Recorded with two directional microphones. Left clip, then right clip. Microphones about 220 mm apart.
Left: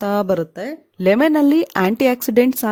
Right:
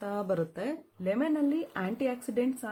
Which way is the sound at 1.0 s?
45° left (ahead or behind).